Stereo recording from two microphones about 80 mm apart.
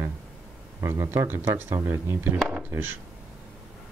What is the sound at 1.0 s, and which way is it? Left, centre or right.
Speech, right.